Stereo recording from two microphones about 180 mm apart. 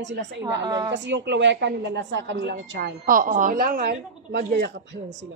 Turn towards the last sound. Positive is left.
turn(degrees=-65)  # may be behind; listen again after turning